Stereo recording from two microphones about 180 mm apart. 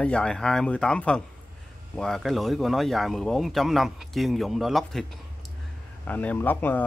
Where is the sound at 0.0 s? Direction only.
5° left (ahead or behind).